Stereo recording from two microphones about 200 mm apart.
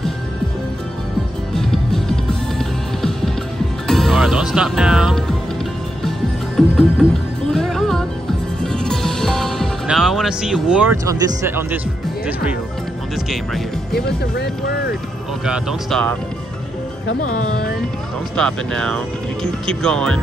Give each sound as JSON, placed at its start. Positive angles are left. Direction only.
{"t": 1.5, "sound": "music", "side_deg": 0}
{"t": 3.8, "sound": "music", "side_deg": 0}
{"t": 13.9, "sound": "speech", "side_deg": 55}
{"t": 15.4, "sound": "speech", "side_deg": 0}
{"t": 18.3, "sound": "speech", "side_deg": 5}